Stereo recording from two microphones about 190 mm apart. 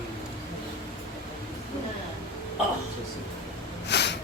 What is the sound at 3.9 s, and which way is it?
Snort, 65° left (ahead or behind).